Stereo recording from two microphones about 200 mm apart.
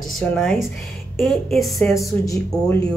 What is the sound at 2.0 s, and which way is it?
Speech, 15° left (ahead or behind).